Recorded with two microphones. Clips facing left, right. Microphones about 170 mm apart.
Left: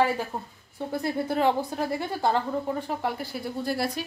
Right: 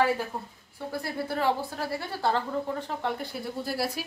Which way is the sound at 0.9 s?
20° left (ahead or behind).